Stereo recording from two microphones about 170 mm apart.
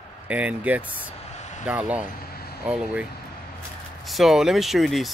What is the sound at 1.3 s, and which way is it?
Vehicle, 45° left (ahead or behind).